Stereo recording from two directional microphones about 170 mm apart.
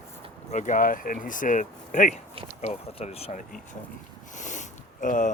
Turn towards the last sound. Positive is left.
turn(degrees=50)  # may be behind; listen again after turning